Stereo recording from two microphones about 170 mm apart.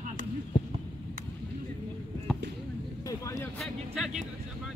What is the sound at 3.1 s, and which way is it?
Speech, 20° left (ahead or behind).